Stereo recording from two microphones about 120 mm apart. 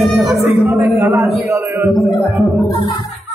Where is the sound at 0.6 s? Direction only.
20° right (ahead or behind).